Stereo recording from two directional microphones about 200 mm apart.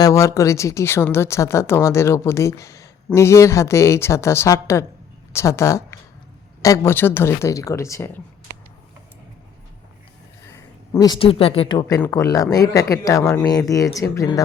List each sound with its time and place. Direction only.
0.0 s speech: 15° left (ahead or behind)
10.9 s speech: 20° left (ahead or behind)
11.9 s speech: 10° left (ahead or behind)